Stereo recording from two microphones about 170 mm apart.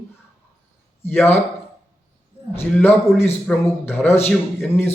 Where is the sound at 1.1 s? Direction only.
10° left (ahead or behind).